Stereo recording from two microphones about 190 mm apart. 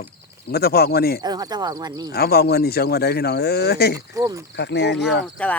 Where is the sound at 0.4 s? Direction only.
55° left (ahead or behind).